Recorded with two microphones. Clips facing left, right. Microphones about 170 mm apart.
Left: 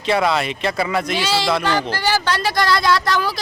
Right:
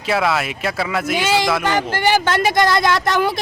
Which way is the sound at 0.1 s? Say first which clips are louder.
Left 1 dB; 5° right (ahead or behind).